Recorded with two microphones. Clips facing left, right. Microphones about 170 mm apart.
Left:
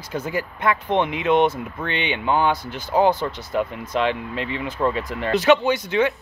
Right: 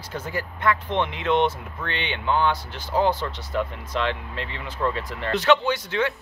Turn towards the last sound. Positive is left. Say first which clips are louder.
# left 4 dB
turn(degrees=15)  # may be behind; listen again after turning